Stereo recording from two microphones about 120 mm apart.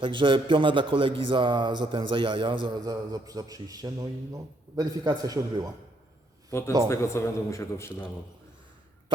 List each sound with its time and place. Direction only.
0.0 s a man's voice: 45° right (ahead or behind)
6.5 s a man's voice: 20° left (ahead or behind)